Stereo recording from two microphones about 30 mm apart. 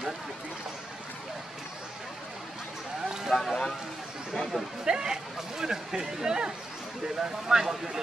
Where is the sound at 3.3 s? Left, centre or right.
Left.